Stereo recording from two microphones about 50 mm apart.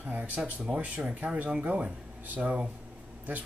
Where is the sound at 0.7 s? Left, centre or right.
Right.